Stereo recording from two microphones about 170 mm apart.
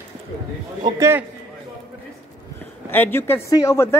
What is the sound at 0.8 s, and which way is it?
Speech, 15° right (ahead or behind).